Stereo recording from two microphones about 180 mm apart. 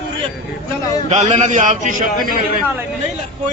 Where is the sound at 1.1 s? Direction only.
40° right (ahead or behind).